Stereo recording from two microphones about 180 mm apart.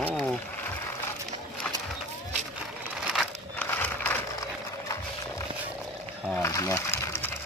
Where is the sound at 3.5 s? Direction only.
10° left (ahead or behind).